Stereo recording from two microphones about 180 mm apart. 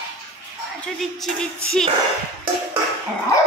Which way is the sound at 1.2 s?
5° left (ahead or behind).